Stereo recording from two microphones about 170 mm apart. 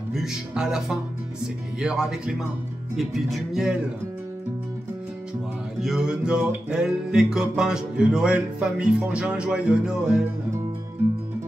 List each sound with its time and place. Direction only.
0.1 s music: centre (ahead or behind)
5.8 s music: 5° right (ahead or behind)